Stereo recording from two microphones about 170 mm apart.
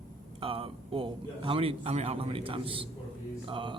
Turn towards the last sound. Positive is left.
turn(degrees=-30)  # may be behind; listen again after turning